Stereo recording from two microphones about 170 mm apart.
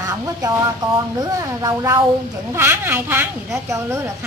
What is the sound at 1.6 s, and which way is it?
Speech, 20° right (ahead or behind).